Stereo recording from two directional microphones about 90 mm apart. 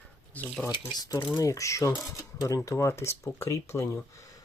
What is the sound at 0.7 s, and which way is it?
Speech, 45° left (ahead or behind).